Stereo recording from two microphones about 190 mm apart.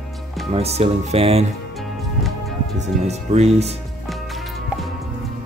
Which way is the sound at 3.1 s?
35° right (ahead or behind).